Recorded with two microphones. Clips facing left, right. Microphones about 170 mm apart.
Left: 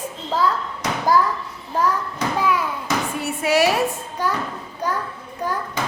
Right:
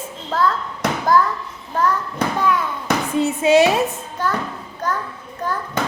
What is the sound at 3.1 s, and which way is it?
Speech, 20° right (ahead or behind).